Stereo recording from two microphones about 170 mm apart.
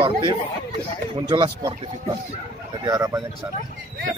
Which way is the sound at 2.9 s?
20° right (ahead or behind).